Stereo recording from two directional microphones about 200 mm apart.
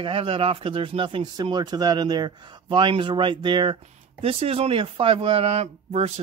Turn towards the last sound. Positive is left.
turn(degrees=-30)  # may be behind; listen again after turning